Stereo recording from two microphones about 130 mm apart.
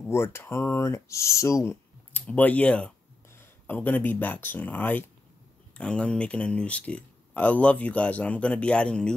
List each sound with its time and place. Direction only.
0.0 s speech: 20° left (ahead or behind)